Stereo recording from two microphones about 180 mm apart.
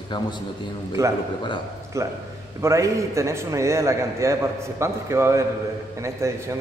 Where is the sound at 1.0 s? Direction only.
15° right (ahead or behind).